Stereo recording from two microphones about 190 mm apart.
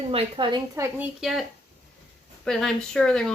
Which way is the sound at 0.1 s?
30° right (ahead or behind).